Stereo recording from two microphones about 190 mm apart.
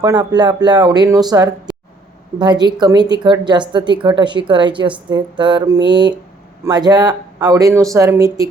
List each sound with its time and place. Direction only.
0.0 s a woman's voice: 20° right (ahead or behind)